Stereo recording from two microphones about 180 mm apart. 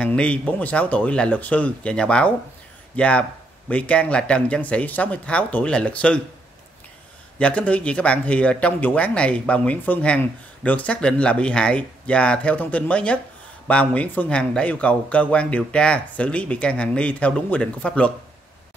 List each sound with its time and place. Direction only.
0.0 s speech: 5° left (ahead or behind)
7.3 s speech: 5° left (ahead or behind)